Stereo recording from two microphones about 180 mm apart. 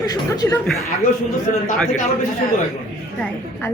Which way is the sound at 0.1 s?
20° left (ahead or behind).